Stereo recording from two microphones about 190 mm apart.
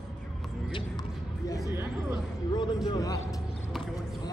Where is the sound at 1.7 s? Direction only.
15° right (ahead or behind).